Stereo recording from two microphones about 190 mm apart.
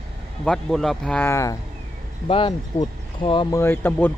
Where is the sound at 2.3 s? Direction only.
25° left (ahead or behind).